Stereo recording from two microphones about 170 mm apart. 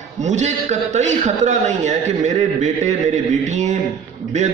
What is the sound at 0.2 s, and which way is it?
A man's voice, 45° right (ahead or behind).